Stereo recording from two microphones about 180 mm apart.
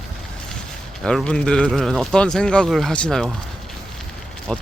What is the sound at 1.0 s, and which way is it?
Speech, 5° left (ahead or behind).